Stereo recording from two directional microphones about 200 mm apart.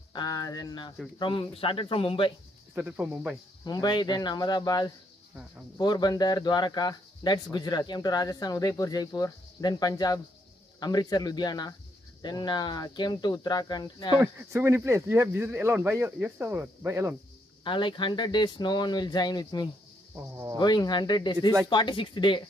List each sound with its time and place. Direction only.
0.1 s speech: 20° left (ahead or behind)
2.7 s speech: 10° right (ahead or behind)
3.6 s speech: 20° left (ahead or behind)
14.1 s speech: 15° right (ahead or behind)
17.6 s speech: 25° left (ahead or behind)
20.2 s speech: 15° right (ahead or behind)
20.5 s speech: 20° left (ahead or behind)